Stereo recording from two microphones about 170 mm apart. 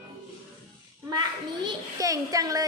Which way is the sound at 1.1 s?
25° right (ahead or behind).